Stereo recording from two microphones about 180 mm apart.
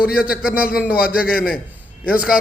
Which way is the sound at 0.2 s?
5° right (ahead or behind).